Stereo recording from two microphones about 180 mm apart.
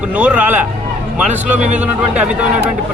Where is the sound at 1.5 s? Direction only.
40° right (ahead or behind).